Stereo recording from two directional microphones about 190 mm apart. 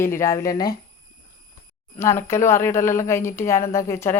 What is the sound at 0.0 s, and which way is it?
Speech, 15° left (ahead or behind).